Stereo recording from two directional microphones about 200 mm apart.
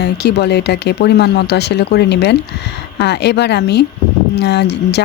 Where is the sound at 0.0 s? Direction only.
55° left (ahead or behind).